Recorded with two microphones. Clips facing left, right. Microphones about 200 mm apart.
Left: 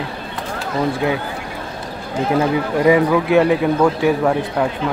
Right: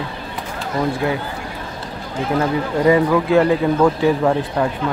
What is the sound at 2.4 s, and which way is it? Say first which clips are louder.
Speech: even; 15° left (ahead or behind).